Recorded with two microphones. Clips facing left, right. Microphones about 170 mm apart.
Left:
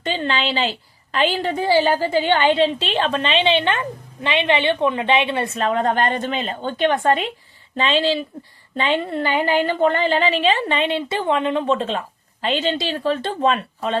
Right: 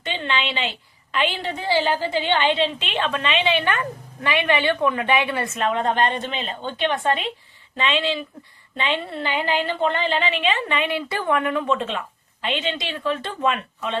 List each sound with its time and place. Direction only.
0.0 s a woman's voice: 40° left (ahead or behind)